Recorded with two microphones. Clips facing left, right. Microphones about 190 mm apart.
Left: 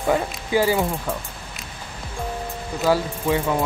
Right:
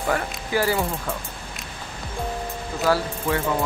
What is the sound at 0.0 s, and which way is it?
Speech, 15° left (ahead or behind).